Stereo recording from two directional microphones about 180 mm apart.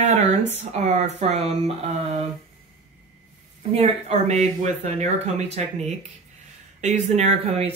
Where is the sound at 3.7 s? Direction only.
35° right (ahead or behind).